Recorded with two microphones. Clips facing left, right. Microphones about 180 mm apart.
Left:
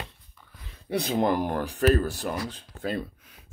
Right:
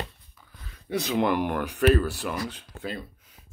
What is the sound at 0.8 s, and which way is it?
Speech, 30° left (ahead or behind).